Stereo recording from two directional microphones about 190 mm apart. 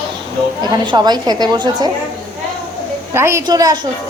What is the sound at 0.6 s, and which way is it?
A woman's voice, 20° right (ahead or behind).